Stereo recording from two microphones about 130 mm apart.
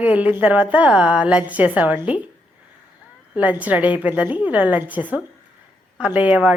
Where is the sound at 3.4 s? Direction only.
10° right (ahead or behind).